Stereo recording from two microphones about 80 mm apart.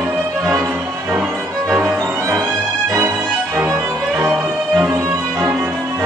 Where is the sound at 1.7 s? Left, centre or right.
Centre.